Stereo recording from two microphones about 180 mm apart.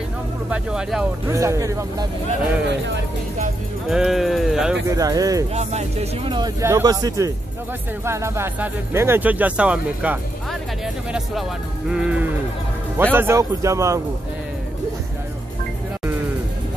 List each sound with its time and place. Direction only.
0.5 s speech: 5° right (ahead or behind)
1.3 s speech: 15° right (ahead or behind)
3.9 s speech: centre (ahead or behind)
4.8 s speech: 20° right (ahead or behind)
5.5 s speech: 35° right (ahead or behind); by 10.1 s 10° right (ahead or behind)
11.9 s speech: 5° right (ahead or behind)